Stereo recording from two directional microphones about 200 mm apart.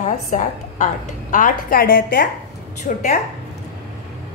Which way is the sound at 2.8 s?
40° left (ahead or behind).